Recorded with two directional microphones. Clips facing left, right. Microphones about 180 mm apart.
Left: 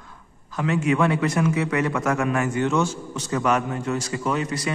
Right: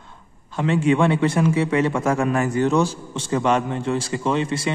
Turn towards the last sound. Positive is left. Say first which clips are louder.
# right 3 dB
turn(degrees=-25)  # may be behind; listen again after turning